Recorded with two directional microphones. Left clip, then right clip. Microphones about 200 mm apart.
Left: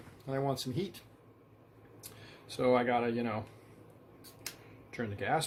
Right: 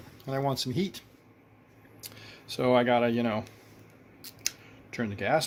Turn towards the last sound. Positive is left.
turn(degrees=-45)  # may be behind; listen again after turning